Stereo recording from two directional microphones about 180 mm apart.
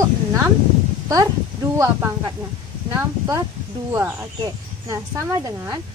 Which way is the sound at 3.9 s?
15° right (ahead or behind).